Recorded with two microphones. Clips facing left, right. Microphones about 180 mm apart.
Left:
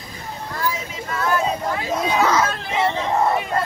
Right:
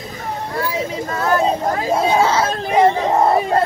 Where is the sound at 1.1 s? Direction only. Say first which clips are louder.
Right 4 dB; 40° right (ahead or behind).